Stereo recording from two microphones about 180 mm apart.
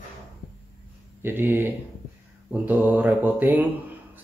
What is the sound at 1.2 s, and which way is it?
Speech, 10° right (ahead or behind).